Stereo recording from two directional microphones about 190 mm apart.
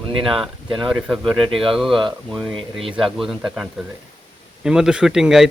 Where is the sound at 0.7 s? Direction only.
25° right (ahead or behind).